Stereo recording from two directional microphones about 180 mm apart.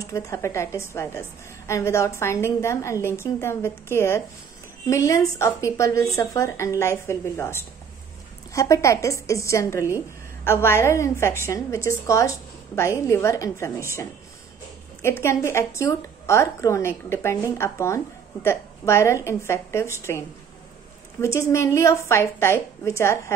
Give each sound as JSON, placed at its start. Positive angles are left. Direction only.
{"t": 0.0, "sound": "a woman's voice", "side_deg": 15}